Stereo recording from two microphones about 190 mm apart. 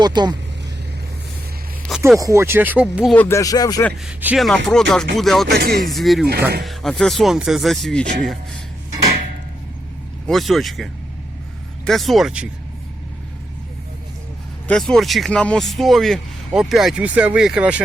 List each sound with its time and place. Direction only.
0.0 s speech: 20° right (ahead or behind)
2.1 s speech: 15° right (ahead or behind)
3.2 s speech: 15° left (ahead or behind)
4.0 s speech: 5° right (ahead or behind)
5.5 s speech: 50° right (ahead or behind)
5.8 s speech: centre (ahead or behind)
8.0 s speech: 40° right (ahead or behind)
10.2 s speech: centre (ahead or behind)
11.9 s speech: centre (ahead or behind)
14.7 s speech: centre (ahead or behind)